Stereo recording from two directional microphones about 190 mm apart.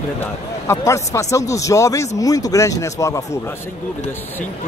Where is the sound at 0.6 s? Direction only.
15° left (ahead or behind).